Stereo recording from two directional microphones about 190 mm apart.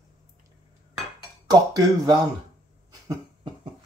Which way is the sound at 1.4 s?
20° right (ahead or behind).